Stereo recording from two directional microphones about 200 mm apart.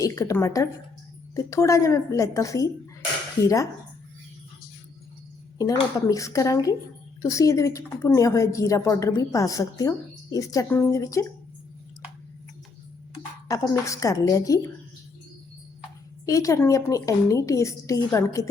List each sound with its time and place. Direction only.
0.0 s a woman's voice: 15° left (ahead or behind)
5.5 s a woman's voice: 15° left (ahead or behind)
13.1 s speech: 15° left (ahead or behind)
16.2 s a woman's voice: 15° left (ahead or behind)